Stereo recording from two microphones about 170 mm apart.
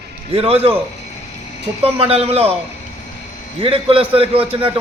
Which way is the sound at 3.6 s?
30° right (ahead or behind).